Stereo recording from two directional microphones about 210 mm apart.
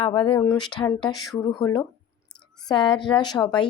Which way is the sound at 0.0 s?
25° left (ahead or behind).